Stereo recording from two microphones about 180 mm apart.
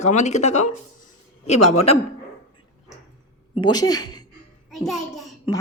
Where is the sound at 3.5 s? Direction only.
25° left (ahead or behind).